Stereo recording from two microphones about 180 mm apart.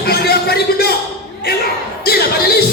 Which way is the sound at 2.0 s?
60° left (ahead or behind).